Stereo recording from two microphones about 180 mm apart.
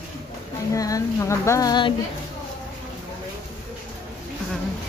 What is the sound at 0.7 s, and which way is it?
Speech, 20° left (ahead or behind).